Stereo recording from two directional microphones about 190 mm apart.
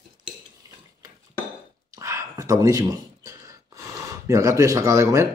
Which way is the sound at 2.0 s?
15° right (ahead or behind).